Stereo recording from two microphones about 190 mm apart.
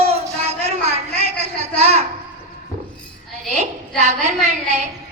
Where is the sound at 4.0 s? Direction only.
35° right (ahead or behind).